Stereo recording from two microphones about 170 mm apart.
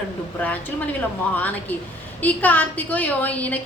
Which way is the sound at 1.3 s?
10° left (ahead or behind).